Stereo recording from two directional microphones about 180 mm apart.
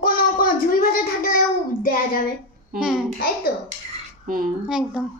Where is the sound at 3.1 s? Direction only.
55° left (ahead or behind).